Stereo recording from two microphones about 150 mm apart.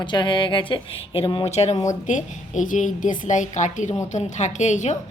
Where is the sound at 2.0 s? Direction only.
55° left (ahead or behind).